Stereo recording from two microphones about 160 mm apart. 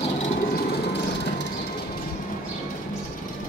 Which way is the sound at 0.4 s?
70° left (ahead or behind).